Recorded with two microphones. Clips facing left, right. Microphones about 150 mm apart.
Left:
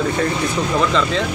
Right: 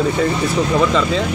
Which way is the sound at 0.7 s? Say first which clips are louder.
Right 1 dB; 5° right (ahead or behind).